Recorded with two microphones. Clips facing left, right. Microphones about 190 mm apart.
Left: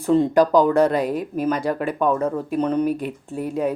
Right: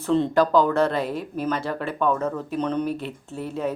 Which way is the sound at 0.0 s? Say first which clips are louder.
Left 4 dB; 10° left (ahead or behind).